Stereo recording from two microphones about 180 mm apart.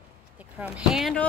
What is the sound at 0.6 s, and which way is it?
Speech, 5° right (ahead or behind).